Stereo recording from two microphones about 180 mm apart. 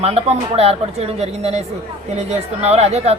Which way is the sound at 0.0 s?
35° right (ahead or behind).